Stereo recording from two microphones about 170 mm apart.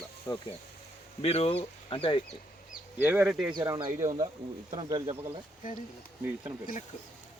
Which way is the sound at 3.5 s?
25° right (ahead or behind).